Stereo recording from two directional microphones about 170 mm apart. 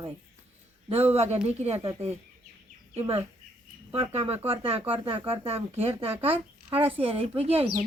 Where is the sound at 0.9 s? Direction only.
40° right (ahead or behind).